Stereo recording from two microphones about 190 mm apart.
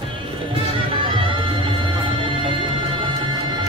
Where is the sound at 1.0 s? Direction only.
25° right (ahead or behind).